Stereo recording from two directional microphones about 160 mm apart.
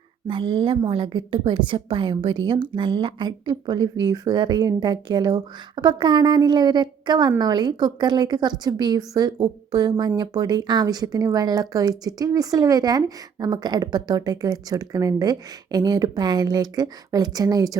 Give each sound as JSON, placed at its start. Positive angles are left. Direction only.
{"t": 0.3, "sound": "a woman's voice", "side_deg": -30}